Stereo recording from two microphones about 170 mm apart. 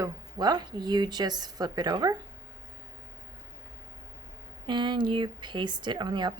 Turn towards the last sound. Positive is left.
turn(degrees=-25)  # may be behind; listen again after turning